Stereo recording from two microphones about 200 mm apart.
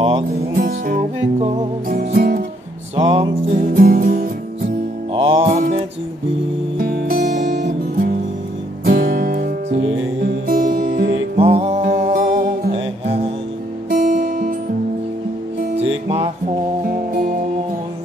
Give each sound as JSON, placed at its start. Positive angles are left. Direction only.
{"t": 0.6, "sound": "music", "side_deg": -45}
{"t": 3.0, "sound": "music", "side_deg": -30}
{"t": 3.6, "sound": "music", "side_deg": -45}
{"t": 4.6, "sound": "music", "side_deg": -25}
{"t": 6.8, "sound": "music", "side_deg": -45}
{"t": 7.5, "sound": "music", "side_deg": -55}
{"t": 11.3, "sound": "music", "side_deg": -30}
{"t": 12.7, "sound": "music", "side_deg": -30}
{"t": 13.8, "sound": "guitar", "side_deg": -40}
{"t": 16.9, "sound": "music", "side_deg": -45}